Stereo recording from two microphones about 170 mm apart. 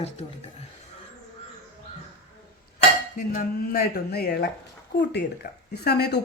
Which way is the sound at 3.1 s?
60° left (ahead or behind).